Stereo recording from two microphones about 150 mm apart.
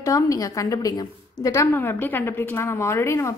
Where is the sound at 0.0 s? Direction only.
20° left (ahead or behind).